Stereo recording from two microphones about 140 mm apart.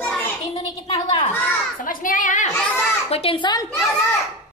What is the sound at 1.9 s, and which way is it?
Speech, 70° left (ahead or behind).